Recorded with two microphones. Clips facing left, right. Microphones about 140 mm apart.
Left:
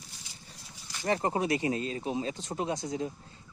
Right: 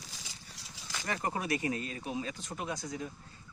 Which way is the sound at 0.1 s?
90° right.